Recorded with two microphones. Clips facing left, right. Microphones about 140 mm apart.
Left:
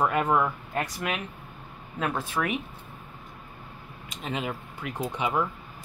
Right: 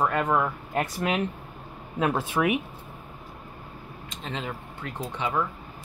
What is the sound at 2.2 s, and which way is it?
Speech, 15° right (ahead or behind).